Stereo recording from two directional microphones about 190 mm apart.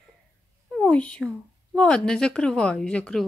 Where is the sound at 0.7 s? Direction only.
5° left (ahead or behind).